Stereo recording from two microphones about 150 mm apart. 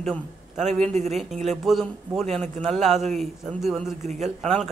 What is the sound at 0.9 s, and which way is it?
Speech, 50° right (ahead or behind).